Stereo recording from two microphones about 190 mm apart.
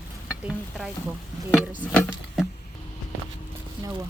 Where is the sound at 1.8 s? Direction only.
5° left (ahead or behind).